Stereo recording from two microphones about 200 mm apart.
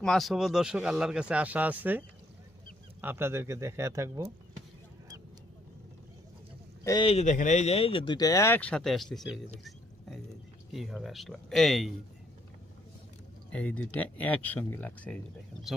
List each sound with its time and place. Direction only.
0.0 s speech: centre (ahead or behind); by 4.3 s 15° right (ahead or behind)
6.8 s speech: 25° left (ahead or behind); by 9.4 s centre (ahead or behind)
10.7 s speech: centre (ahead or behind)
13.5 s speech: 5° left (ahead or behind)